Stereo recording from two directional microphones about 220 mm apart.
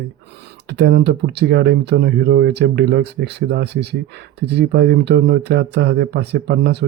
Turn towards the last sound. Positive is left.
turn(degrees=-50)  # may be behind; listen again after turning